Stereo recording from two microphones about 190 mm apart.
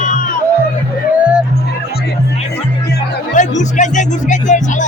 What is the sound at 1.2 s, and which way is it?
Music, 5° right (ahead or behind).